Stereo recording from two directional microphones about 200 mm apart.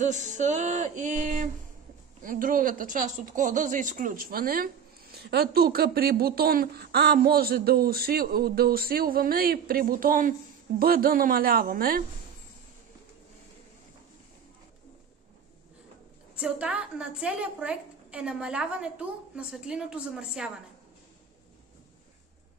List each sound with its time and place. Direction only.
0.0 s a sound: 35° right (ahead or behind)
2.2 s speech: 45° right (ahead or behind)
16.3 s a woman's voice: 5° right (ahead or behind)